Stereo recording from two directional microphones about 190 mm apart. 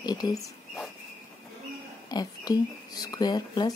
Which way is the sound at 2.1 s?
20° left (ahead or behind).